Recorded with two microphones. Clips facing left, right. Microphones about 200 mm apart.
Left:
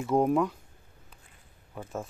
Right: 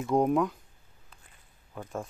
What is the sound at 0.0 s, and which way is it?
Speech, centre (ahead or behind).